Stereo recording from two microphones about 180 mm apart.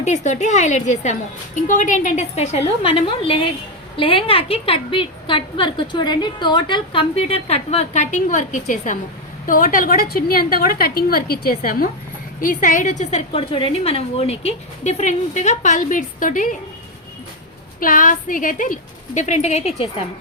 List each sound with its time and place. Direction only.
0.0 s a woman's voice: 40° left (ahead or behind)
17.7 s a woman's voice: 50° left (ahead or behind)